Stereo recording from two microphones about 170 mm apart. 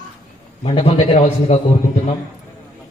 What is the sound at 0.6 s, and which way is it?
Speech, 35° left (ahead or behind).